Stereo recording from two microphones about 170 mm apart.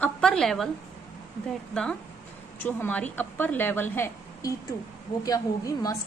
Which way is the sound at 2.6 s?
10° left (ahead or behind).